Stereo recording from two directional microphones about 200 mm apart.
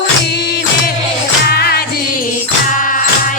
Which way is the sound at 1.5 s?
50° left (ahead or behind).